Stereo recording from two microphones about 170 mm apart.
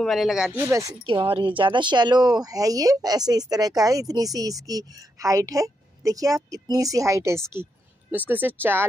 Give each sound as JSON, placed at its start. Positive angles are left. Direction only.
{"t": 0.0, "sound": "speech", "side_deg": 0}
{"t": 1.0, "sound": "speech", "side_deg": -30}